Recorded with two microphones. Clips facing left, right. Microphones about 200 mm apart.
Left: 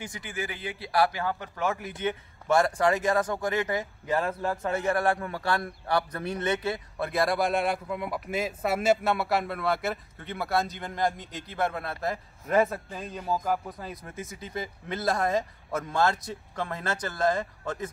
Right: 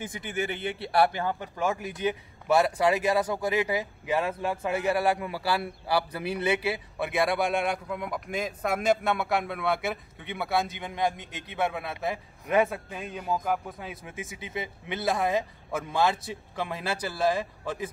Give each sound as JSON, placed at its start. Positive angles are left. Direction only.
{"t": 0.0, "sound": "a man's voice", "side_deg": -20}